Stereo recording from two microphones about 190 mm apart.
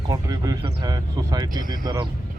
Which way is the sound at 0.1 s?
20° right (ahead or behind).